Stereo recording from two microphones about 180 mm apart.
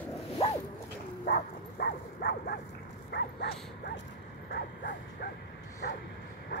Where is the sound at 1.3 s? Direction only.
60° left (ahead or behind).